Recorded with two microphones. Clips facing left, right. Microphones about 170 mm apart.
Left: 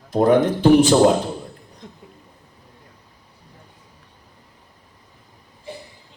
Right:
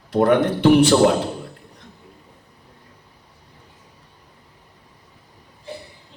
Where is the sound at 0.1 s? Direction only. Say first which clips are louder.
Left 1 dB; 65° right (ahead or behind).